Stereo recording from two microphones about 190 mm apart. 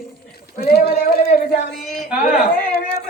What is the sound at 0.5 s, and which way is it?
Speech, 55° left (ahead or behind).